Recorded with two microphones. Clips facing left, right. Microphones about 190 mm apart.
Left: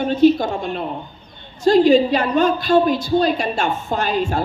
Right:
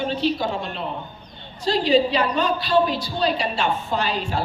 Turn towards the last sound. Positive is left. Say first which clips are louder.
# left 4 dB
turn(degrees=50)  # may be behind; listen again after turning